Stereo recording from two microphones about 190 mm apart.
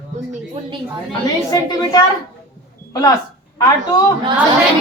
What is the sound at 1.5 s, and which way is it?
Speech, 20° left (ahead or behind).